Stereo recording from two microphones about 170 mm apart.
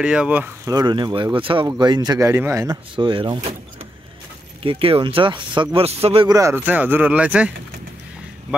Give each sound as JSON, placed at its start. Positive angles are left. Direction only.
{"t": 0.0, "sound": "speech", "side_deg": -5}
{"t": 0.7, "sound": "speech", "side_deg": -25}
{"t": 4.6, "sound": "speech", "side_deg": -35}
{"t": 6.2, "sound": "speech", "side_deg": -20}